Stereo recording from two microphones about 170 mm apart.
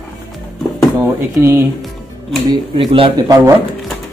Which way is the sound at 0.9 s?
15° right (ahead or behind).